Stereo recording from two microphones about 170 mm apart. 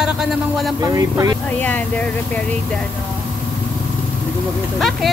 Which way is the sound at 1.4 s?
10° left (ahead or behind).